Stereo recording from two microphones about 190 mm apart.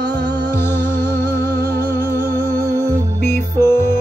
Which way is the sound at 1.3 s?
55° right (ahead or behind).